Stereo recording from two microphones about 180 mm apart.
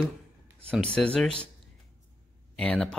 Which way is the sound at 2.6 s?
5° left (ahead or behind).